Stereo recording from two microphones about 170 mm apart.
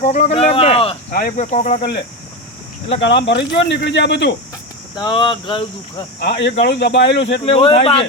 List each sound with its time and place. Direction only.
0.0 s speech: 45° left (ahead or behind)
1.1 s speech: 60° left (ahead or behind)
1.5 s speech: 45° left (ahead or behind)
3.0 s speech: 90° left
4.9 s speech: 30° left (ahead or behind)
6.1 s speech: 85° left
7.4 s speech: 35° left (ahead or behind)